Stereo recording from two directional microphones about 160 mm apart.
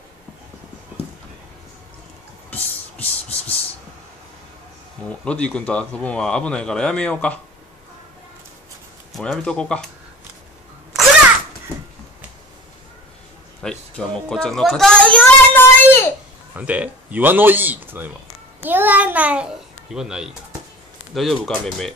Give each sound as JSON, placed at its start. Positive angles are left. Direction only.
{"t": 2.5, "sound": "a sound", "side_deg": 10}
{"t": 5.2, "sound": "speech", "side_deg": 5}
{"t": 9.1, "sound": "speech", "side_deg": 5}
{"t": 13.6, "sound": "speech", "side_deg": 5}
{"t": 16.5, "sound": "a child's voice", "side_deg": -10}